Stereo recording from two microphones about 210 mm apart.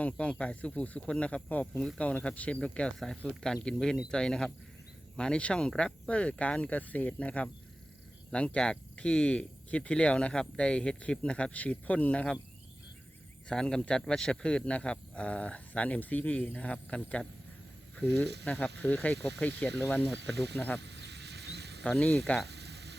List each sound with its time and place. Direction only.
0.0 s speech: 5° left (ahead or behind)
13.5 s speech: 5° left (ahead or behind)
18.4 s speech: 5° left (ahead or behind)
20.0 s speech: 55° right (ahead or behind)
20.7 s a sound: 55° right (ahead or behind)
21.8 s speech: 5° left (ahead or behind)
22.4 s sizzle: 50° right (ahead or behind)